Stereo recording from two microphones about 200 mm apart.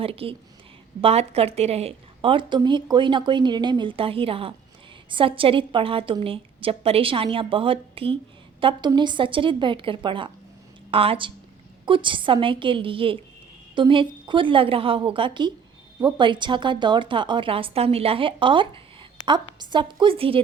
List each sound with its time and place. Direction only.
0.0 s a woman's voice: 30° right (ahead or behind)